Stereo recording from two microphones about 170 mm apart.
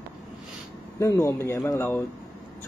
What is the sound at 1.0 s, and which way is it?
Speech, 20° left (ahead or behind).